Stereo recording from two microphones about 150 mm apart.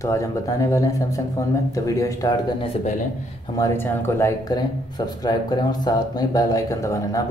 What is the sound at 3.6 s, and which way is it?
Speech, 20° left (ahead or behind).